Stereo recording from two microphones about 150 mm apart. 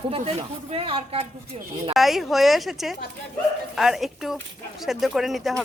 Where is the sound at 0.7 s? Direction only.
40° right (ahead or behind).